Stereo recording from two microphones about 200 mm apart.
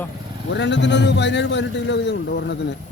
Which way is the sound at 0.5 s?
60° left (ahead or behind).